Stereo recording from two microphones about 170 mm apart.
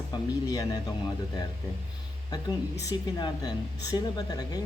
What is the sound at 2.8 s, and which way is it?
Speech, 20° left (ahead or behind).